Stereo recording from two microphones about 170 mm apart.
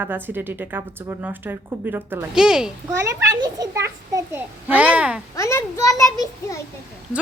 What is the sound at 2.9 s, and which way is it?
A child's voice, 20° right (ahead or behind).